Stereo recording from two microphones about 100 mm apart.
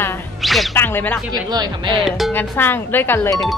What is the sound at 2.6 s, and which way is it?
Speech, 20° left (ahead or behind).